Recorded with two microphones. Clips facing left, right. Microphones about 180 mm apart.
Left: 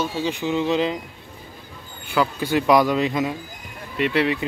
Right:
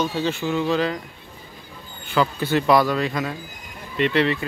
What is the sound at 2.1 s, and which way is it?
Speech, 10° left (ahead or behind).